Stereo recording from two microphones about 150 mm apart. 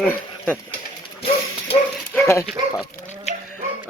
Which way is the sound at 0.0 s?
10° left (ahead or behind).